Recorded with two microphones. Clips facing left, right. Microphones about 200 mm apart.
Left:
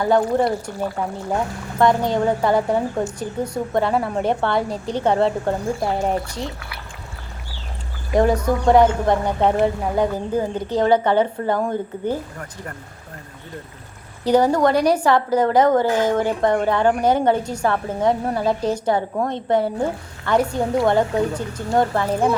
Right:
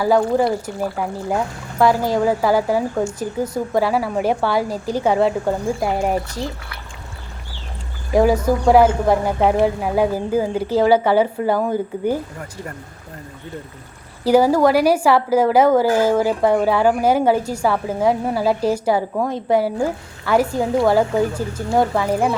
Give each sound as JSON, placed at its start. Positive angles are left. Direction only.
{"t": 0.0, "sound": "a woman's voice", "side_deg": -5}
{"t": 8.1, "sound": "speech", "side_deg": -5}
{"t": 14.3, "sound": "a woman's voice", "side_deg": -5}